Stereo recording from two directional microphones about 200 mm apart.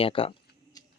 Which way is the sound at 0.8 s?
20° left (ahead or behind).